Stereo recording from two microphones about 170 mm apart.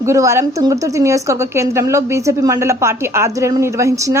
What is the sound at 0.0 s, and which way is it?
A woman's voice, 15° right (ahead or behind).